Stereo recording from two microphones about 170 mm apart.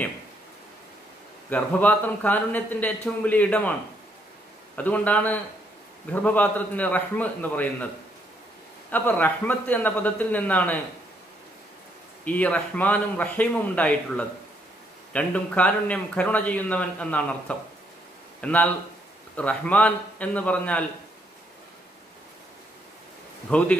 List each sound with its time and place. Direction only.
1.5 s a man's voice: 10° left (ahead or behind)
4.7 s a man's voice: 10° left (ahead or behind)
8.9 s a man's voice: 10° left (ahead or behind)
12.3 s a man's voice: 10° left (ahead or behind)
23.5 s a man's voice: 5° left (ahead or behind)